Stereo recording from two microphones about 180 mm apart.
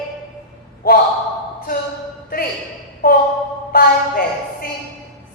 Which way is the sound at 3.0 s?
50° left (ahead or behind).